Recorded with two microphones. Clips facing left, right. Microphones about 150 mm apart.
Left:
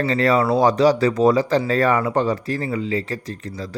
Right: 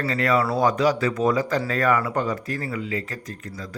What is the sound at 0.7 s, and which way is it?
Speech, 35° left (ahead or behind).